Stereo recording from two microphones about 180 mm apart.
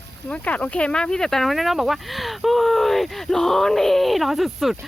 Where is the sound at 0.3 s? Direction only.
5° left (ahead or behind).